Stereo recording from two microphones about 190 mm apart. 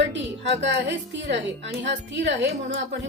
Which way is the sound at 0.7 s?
65° right (ahead or behind).